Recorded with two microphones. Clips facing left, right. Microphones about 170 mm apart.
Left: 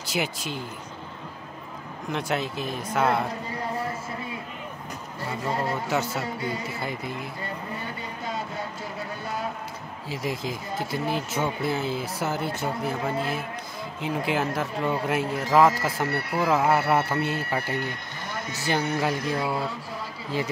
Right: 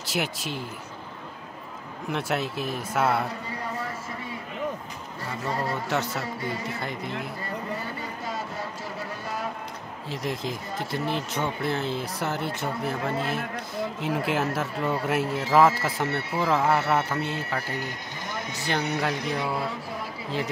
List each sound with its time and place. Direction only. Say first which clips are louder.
0.0 s speech: left 1 dB; centre (ahead or behind)
2.0 s speech: even; 5° right (ahead or behind)
5.5 s a man's voice: left 1 dB; 25° left (ahead or behind)
5.9 s speech: left 1 dB; centre (ahead or behind)
10.0 s speech: even; 5° left (ahead or behind)